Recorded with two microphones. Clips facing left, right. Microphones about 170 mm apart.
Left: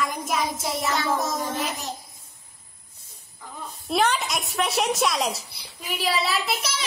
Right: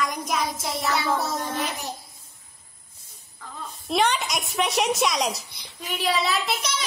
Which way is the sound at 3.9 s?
Centre (ahead or behind).